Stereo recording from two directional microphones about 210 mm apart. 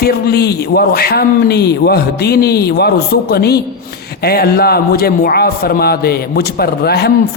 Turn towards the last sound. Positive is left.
turn(degrees=50)  # may be behind; listen again after turning